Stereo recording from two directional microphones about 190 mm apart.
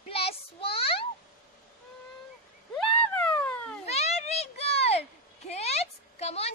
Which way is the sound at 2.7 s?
5° left (ahead or behind).